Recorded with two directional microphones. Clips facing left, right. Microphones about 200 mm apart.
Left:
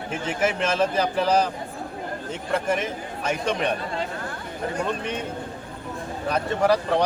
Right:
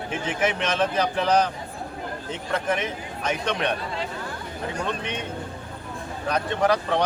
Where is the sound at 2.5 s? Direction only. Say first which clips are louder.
Left 1 dB; 5° left (ahead or behind).